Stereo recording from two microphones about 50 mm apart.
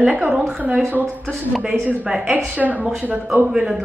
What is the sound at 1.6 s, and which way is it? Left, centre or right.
A woman's voice, right.